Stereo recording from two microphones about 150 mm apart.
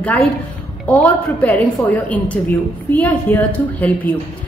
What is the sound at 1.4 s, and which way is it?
A woman's voice, 10° left (ahead or behind).